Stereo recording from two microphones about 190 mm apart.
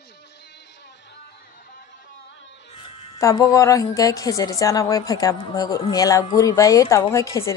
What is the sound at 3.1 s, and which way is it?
Speech, 15° left (ahead or behind).